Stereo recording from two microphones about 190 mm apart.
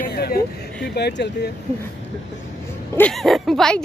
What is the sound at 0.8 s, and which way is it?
Speech, 60° left (ahead or behind).